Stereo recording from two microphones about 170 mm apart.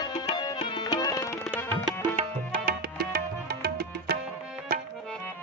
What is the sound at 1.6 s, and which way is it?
Music, 10° left (ahead or behind).